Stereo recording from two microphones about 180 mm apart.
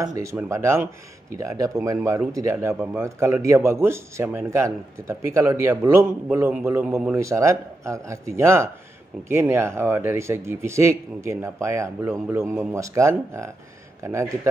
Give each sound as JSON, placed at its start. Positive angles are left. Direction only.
{"t": 0.0, "sound": "speech", "side_deg": -20}